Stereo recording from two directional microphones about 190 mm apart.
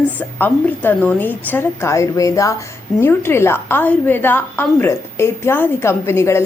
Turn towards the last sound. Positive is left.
turn(degrees=15)  # may be behind; listen again after turning